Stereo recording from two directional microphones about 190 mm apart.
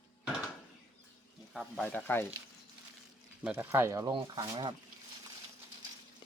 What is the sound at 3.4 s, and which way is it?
Speech, 10° right (ahead or behind).